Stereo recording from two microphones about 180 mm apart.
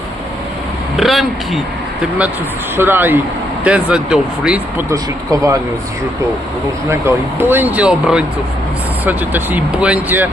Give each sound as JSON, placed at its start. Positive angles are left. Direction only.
{"t": 0.9, "sound": "speech", "side_deg": 0}
{"t": 2.7, "sound": "speech", "side_deg": -10}
{"t": 4.9, "sound": "speech", "side_deg": -15}
{"t": 7.3, "sound": "speech", "side_deg": -10}